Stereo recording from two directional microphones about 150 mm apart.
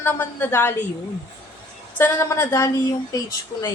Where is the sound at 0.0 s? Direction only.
15° left (ahead or behind).